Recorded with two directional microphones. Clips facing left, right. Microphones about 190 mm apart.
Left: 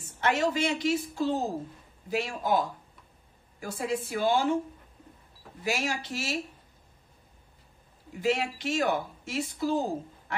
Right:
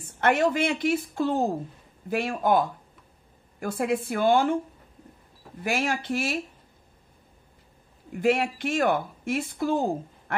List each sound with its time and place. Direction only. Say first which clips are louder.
0.2 s speech: right 4 dB; 55° right (ahead or behind)
5.6 s speech: right 4 dB; 55° right (ahead or behind)
8.1 s speech: right 5 dB; 55° right (ahead or behind)